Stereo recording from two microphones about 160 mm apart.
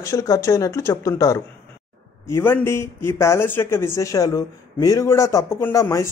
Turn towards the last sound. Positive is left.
turn(degrees=20)  # may be behind; listen again after turning